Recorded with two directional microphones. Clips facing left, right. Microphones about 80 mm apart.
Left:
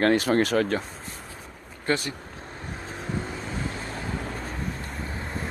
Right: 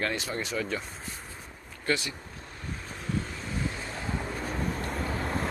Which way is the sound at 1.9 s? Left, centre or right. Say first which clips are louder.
Left 3 dB; left.